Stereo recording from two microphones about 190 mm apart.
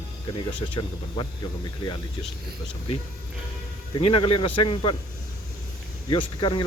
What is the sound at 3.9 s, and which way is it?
Speech, 25° left (ahead or behind).